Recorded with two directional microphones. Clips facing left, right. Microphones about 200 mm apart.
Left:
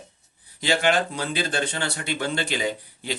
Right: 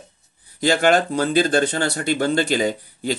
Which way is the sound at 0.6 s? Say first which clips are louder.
Right 5 dB; 45° right (ahead or behind).